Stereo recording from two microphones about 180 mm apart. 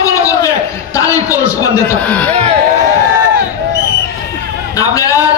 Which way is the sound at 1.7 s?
10° left (ahead or behind).